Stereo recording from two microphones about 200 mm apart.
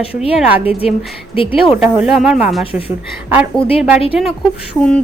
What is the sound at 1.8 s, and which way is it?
Speech, 5° right (ahead or behind).